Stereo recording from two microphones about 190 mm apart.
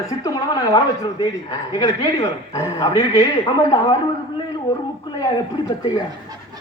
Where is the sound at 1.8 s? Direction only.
30° left (ahead or behind).